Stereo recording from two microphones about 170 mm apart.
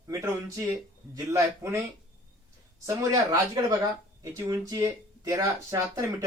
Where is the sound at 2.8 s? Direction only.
20° right (ahead or behind).